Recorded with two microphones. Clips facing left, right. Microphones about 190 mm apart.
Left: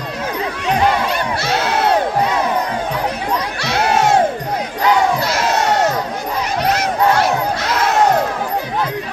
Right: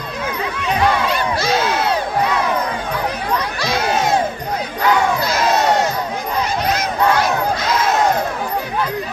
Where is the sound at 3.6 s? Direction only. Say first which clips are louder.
Left 4 dB; 70° left (ahead or behind).